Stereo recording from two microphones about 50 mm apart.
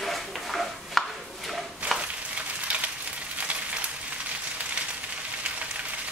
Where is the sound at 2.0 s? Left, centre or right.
Right.